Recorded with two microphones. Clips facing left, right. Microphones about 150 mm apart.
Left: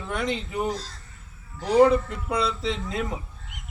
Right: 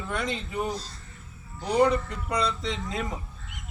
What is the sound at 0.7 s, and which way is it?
Speech, 90° left.